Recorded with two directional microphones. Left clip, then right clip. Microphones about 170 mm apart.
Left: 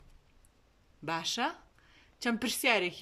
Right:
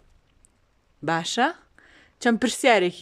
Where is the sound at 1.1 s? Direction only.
45° right (ahead or behind).